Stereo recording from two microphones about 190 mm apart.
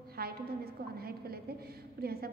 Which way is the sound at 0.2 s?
55° right (ahead or behind).